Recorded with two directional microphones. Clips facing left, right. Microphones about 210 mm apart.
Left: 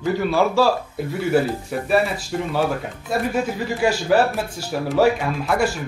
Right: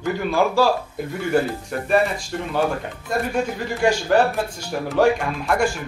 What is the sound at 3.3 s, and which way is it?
Speech, 5° left (ahead or behind).